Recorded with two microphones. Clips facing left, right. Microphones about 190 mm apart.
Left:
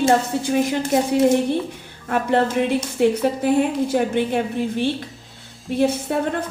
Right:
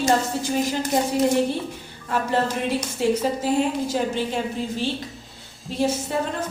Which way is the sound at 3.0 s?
60° left (ahead or behind).